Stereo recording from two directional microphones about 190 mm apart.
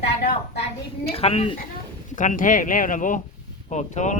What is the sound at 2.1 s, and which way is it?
Speech, 45° left (ahead or behind).